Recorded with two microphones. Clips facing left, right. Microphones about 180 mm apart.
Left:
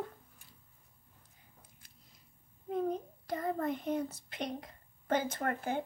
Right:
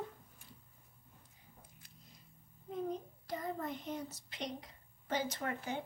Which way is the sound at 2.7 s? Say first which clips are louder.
Left 6 dB; 55° left (ahead or behind).